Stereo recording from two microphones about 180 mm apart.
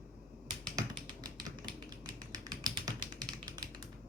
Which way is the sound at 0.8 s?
25° right (ahead or behind).